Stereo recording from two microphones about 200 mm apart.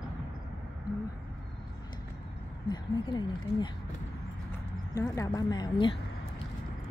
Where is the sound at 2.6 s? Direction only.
20° left (ahead or behind).